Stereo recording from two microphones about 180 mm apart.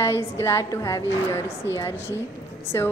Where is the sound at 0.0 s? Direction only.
15° left (ahead or behind).